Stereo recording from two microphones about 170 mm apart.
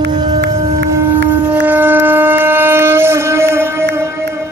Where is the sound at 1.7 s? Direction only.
10° right (ahead or behind).